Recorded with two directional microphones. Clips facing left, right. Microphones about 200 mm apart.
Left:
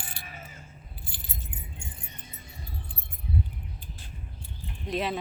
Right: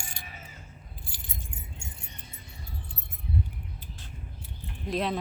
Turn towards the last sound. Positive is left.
turn(degrees=0)  # may be behind; listen again after turning